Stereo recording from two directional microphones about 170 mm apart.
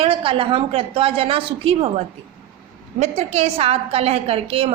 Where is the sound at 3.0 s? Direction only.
40° right (ahead or behind).